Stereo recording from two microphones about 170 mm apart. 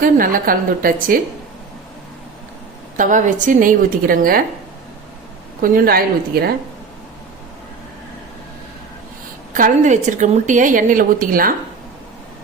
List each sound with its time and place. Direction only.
0.0 s a woman's voice: 55° right (ahead or behind)
3.0 s a woman's voice: 50° right (ahead or behind)
5.6 s a woman's voice: 60° right (ahead or behind)
9.6 s a woman's voice: 50° right (ahead or behind)